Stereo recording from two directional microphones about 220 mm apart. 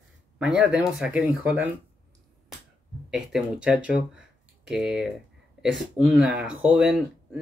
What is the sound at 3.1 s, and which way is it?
Speech, centre (ahead or behind).